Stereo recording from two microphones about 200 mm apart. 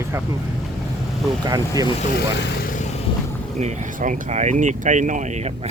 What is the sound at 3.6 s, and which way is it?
Speech, 35° right (ahead or behind).